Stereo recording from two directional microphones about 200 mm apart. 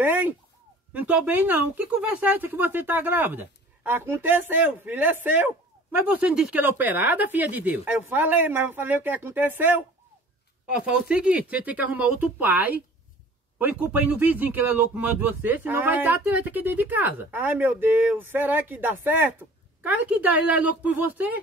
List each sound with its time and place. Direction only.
0.0 s speech: 10° right (ahead or behind)